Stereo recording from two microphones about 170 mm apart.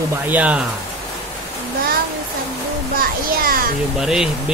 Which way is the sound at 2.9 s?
60° right (ahead or behind).